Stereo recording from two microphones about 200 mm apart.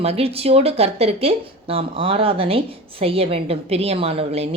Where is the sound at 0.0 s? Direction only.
30° right (ahead or behind).